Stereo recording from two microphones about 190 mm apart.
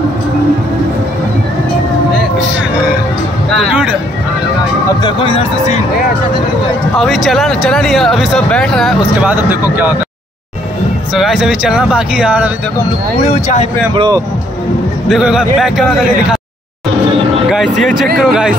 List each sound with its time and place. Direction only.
3.5 s a sound: 5° right (ahead or behind)
5.0 s a sound: 30° left (ahead or behind)
7.0 s speech: centre (ahead or behind)
11.1 s speech: centre (ahead or behind)
13.2 s speech: 35° left (ahead or behind)
13.9 s speech: 25° right (ahead or behind)
15.0 s speech: centre (ahead or behind)
17.5 s speech: centre (ahead or behind)